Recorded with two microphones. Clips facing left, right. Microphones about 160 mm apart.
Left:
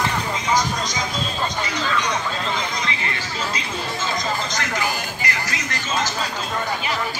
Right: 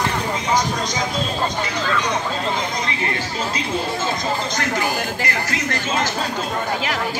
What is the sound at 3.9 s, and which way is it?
Speech, 55° right (ahead or behind).